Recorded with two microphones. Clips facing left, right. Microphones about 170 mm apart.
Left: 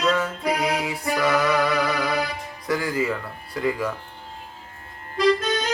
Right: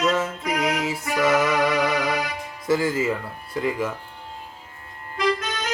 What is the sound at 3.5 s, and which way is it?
Speech, 20° right (ahead or behind).